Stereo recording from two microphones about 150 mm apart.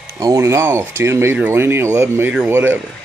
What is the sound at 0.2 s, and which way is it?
Speech, 20° right (ahead or behind).